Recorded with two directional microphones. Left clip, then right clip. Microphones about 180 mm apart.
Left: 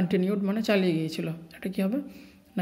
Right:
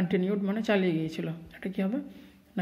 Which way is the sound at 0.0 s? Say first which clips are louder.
Left 2 dB; 15° left (ahead or behind).